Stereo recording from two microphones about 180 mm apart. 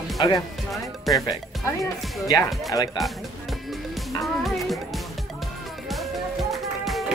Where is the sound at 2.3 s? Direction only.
20° left (ahead or behind).